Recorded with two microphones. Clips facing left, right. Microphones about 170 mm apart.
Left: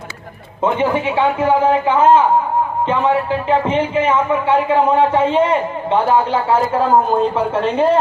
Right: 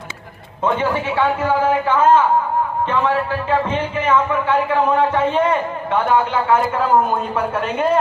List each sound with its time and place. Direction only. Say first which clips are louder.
0.6 s a man's voice: left 3 dB; 15° left (ahead or behind); by 7.9 s 30° left (ahead or behind)